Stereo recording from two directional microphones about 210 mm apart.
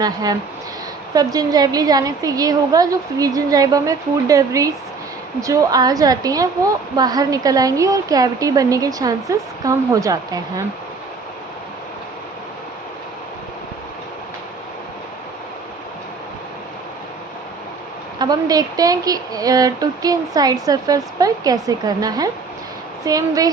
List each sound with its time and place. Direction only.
0.0 s speech: 20° right (ahead or behind)
18.2 s speech: 20° right (ahead or behind)